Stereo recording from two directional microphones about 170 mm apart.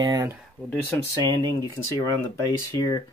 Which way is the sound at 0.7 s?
10° left (ahead or behind).